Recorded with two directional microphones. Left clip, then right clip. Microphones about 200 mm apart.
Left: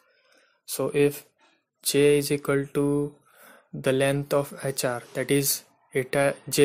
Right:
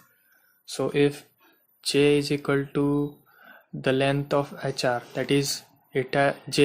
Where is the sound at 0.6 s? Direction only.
25° left (ahead or behind).